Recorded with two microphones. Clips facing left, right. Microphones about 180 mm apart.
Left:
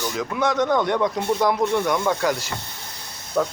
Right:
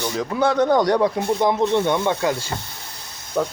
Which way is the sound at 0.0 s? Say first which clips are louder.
Right 3 dB; 25° right (ahead or behind).